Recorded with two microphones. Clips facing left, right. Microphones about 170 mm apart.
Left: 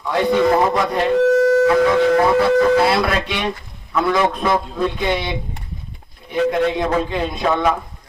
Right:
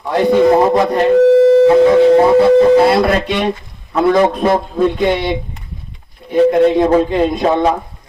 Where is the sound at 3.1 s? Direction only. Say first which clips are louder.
Right 6 dB; 45° right (ahead or behind).